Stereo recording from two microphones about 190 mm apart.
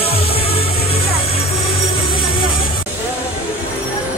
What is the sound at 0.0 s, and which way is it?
Music, 30° left (ahead or behind).